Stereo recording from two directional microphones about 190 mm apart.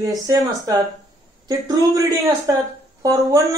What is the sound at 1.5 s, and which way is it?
Speech, 20° right (ahead or behind).